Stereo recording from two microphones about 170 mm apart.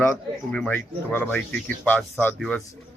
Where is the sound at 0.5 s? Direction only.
10° left (ahead or behind).